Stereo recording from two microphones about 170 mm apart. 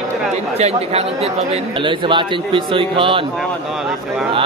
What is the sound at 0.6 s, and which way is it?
A man's voice, 40° right (ahead or behind).